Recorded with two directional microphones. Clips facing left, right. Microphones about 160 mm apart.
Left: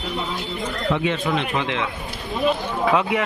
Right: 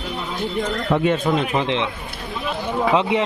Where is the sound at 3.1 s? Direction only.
25° right (ahead or behind).